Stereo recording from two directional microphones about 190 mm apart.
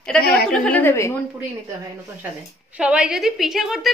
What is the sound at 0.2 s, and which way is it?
Speech, 55° left (ahead or behind).